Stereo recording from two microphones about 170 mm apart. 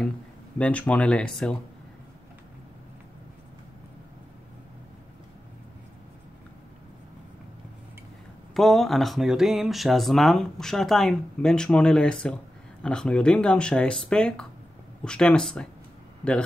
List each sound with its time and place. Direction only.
0.6 s speech: 10° left (ahead or behind)
8.5 s speech: centre (ahead or behind)